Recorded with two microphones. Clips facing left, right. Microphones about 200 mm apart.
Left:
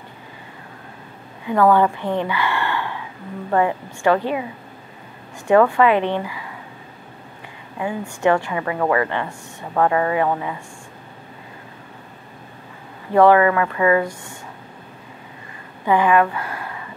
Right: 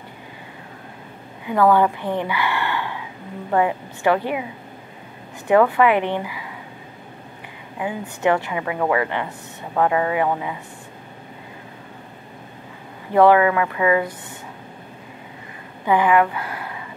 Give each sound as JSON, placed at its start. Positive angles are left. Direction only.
{"t": 1.5, "sound": "a woman's voice", "side_deg": -10}
{"t": 5.5, "sound": "a woman's voice", "side_deg": -15}
{"t": 7.8, "sound": "a woman's voice", "side_deg": -20}
{"t": 8.7, "sound": "a woman's voice", "side_deg": -5}
{"t": 9.0, "sound": "a woman's voice", "side_deg": -15}
{"t": 13.1, "sound": "a woman's voice", "side_deg": -15}
{"t": 15.9, "sound": "a woman's voice", "side_deg": -15}